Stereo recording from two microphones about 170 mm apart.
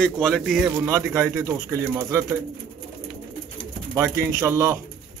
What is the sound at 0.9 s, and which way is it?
Speech, 15° right (ahead or behind).